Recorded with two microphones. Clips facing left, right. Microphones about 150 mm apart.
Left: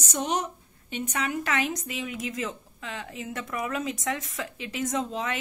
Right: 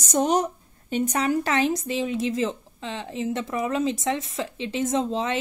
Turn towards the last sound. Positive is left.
turn(degrees=-25)  # may be behind; listen again after turning